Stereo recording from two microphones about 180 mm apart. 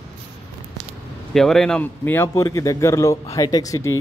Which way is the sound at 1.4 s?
Centre (ahead or behind).